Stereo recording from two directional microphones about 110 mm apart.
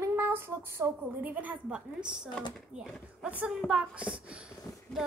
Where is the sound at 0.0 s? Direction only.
20° right (ahead or behind).